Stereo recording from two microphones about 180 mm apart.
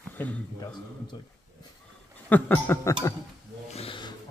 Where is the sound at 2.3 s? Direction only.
10° left (ahead or behind).